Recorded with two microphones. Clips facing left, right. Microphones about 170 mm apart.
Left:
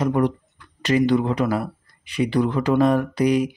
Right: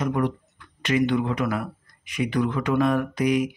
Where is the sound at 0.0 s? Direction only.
35° left (ahead or behind).